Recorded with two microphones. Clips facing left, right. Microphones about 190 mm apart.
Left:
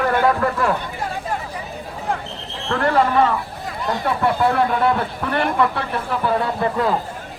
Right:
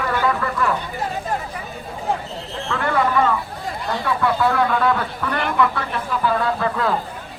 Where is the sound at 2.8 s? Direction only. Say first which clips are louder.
Left 3 dB; 35° left (ahead or behind).